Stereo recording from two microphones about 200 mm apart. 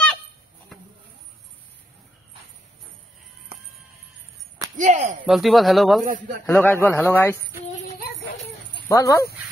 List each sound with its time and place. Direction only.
4.7 s speech: 40° right (ahead or behind)
5.2 s speech: centre (ahead or behind)
6.4 s speech: 10° left (ahead or behind)
8.8 s speech: 15° left (ahead or behind)